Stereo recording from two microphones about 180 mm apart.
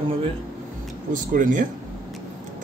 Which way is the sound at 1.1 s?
45° right (ahead or behind).